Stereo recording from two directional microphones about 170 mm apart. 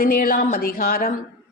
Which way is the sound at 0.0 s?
55° left (ahead or behind).